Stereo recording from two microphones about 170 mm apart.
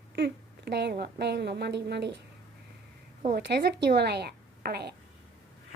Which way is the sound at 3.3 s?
70° right (ahead or behind).